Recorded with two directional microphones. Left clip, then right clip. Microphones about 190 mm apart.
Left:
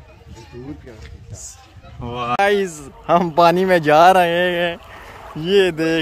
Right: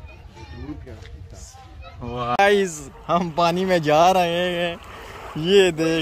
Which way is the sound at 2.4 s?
Centre (ahead or behind).